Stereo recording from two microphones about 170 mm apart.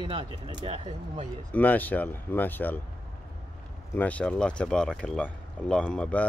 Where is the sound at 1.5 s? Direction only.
10° left (ahead or behind).